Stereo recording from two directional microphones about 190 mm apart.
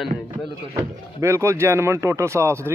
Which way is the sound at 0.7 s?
15° right (ahead or behind).